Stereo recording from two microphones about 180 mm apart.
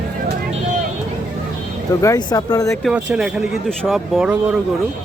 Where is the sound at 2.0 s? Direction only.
20° left (ahead or behind).